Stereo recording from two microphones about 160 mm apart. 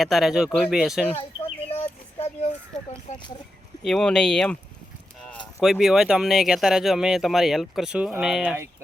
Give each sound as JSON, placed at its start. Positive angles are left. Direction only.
{"t": 0.0, "sound": "speech", "side_deg": 0}
{"t": 1.7, "sound": "a sound", "side_deg": 40}
{"t": 3.8, "sound": "speech", "side_deg": 5}
{"t": 5.5, "sound": "speech", "side_deg": 0}